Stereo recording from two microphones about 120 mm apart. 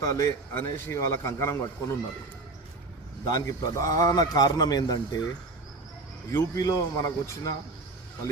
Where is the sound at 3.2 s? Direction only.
30° left (ahead or behind).